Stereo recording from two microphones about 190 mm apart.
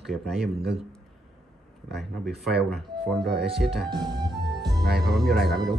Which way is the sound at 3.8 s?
25° right (ahead or behind).